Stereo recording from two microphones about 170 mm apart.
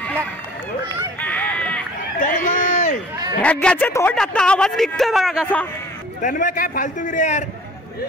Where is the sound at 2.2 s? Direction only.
55° left (ahead or behind).